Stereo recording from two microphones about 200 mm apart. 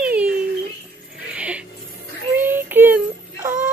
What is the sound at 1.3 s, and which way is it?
Music, 5° right (ahead or behind).